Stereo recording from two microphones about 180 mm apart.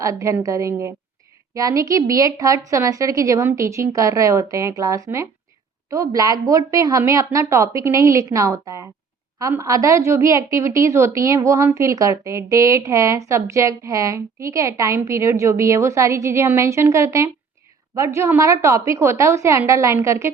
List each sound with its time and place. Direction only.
0.0 s a woman's voice: 15° right (ahead or behind)